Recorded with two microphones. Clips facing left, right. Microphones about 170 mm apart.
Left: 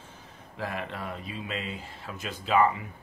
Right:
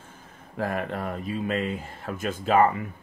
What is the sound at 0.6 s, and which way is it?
Speech, 45° right (ahead or behind).